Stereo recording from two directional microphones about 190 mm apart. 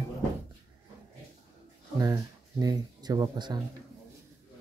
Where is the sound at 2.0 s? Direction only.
20° right (ahead or behind).